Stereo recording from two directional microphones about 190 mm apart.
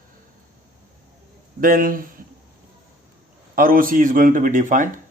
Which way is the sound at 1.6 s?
45° right (ahead or behind).